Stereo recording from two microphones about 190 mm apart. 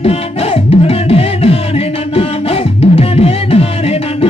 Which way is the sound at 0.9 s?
30° left (ahead or behind).